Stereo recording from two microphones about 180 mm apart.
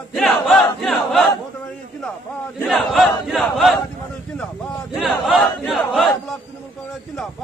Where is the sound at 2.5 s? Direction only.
Centre (ahead or behind).